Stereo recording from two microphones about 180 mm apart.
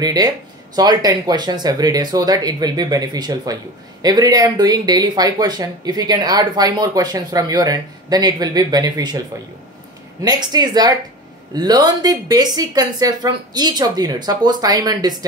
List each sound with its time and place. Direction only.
0.0 s speech: 20° right (ahead or behind)
10.2 s speech: 25° right (ahead or behind)